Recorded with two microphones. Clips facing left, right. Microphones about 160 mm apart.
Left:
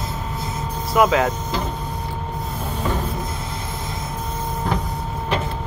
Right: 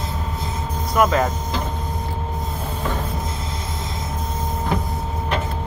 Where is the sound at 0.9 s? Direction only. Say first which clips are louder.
Left 1 dB; 5° left (ahead or behind).